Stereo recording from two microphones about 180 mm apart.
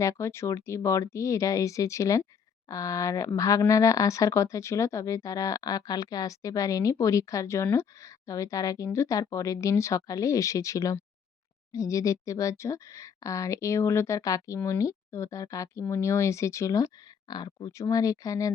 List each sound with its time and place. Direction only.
0.0 s speech: 15° left (ahead or behind)